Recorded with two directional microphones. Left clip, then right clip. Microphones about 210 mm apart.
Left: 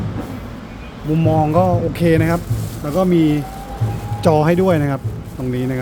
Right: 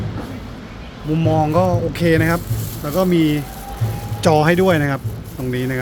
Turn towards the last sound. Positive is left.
turn(degrees=0)  # may be behind; listen again after turning